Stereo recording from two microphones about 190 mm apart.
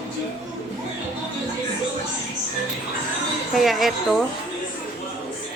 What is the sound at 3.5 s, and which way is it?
Speech, centre (ahead or behind).